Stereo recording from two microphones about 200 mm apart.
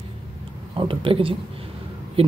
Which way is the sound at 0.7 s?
25° right (ahead or behind).